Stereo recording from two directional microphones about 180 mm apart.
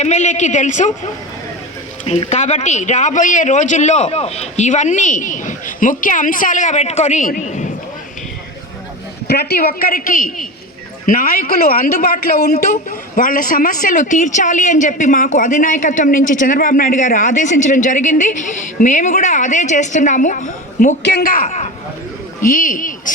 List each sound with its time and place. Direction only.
0.0 s speech: 40° left (ahead or behind)
9.2 s a man's voice: 60° left (ahead or behind); by 20.9 s 45° left (ahead or behind)
21.0 s a man's voice: 65° left (ahead or behind); by 23.1 s 45° left (ahead or behind)